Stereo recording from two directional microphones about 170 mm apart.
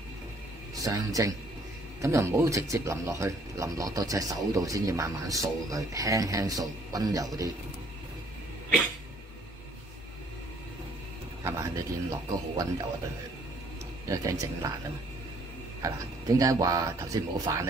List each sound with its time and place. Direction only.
0.7 s speech: 20° right (ahead or behind)
11.4 s music: 15° right (ahead or behind)
14.0 s speech: 20° right (ahead or behind)
15.8 s speech: 20° right (ahead or behind)